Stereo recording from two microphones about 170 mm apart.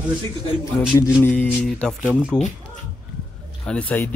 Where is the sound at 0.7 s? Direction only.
15° left (ahead or behind).